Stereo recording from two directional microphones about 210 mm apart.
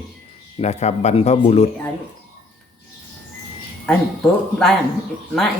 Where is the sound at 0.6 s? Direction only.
30° left (ahead or behind).